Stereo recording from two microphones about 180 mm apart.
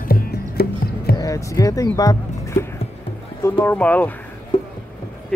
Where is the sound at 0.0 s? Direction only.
55° left (ahead or behind).